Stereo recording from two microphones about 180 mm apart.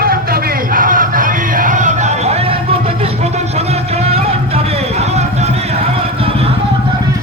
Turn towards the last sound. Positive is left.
turn(degrees=-30)  # may be behind; listen again after turning